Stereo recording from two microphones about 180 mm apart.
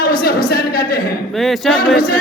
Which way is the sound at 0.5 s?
55° left (ahead or behind).